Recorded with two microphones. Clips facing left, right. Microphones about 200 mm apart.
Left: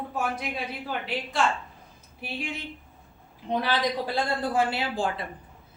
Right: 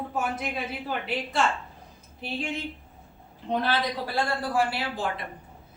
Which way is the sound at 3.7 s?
20° left (ahead or behind).